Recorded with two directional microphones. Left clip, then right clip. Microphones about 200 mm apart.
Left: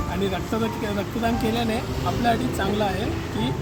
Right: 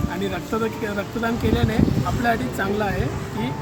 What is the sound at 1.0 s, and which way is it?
Speech, centre (ahead or behind).